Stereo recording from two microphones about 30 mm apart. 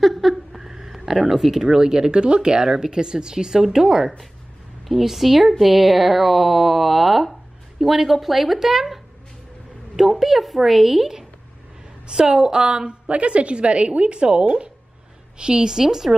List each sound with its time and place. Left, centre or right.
0.0 s a sound: centre
1.3 s speech: centre
1.7 s speech: right
4.8 s speech: centre
12.1 s a woman's voice: right
13.1 s a woman's voice: right
15.8 s speech: centre